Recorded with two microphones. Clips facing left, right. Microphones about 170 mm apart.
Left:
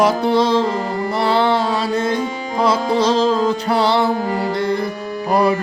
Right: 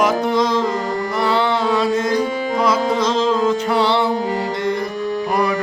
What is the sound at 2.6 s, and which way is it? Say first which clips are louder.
Music: left 3 dB; 30° left (ahead or behind).